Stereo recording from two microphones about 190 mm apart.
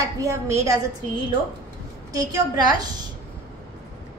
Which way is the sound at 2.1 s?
20° right (ahead or behind).